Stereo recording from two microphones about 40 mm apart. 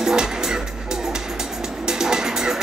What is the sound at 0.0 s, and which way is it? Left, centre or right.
Music, centre.